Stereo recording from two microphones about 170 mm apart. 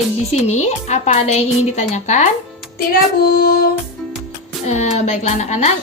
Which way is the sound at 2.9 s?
60° left (ahead or behind).